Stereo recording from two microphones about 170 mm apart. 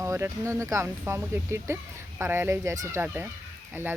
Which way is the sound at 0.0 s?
15° right (ahead or behind).